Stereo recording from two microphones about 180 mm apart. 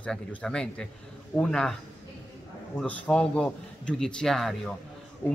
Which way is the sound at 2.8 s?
5° left (ahead or behind).